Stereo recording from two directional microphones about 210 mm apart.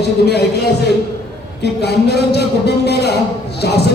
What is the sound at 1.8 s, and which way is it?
A man's voice, 50° left (ahead or behind).